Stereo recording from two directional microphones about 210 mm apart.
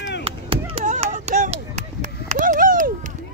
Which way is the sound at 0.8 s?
35° right (ahead or behind).